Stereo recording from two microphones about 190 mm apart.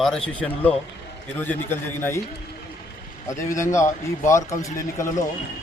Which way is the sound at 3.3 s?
45° left (ahead or behind).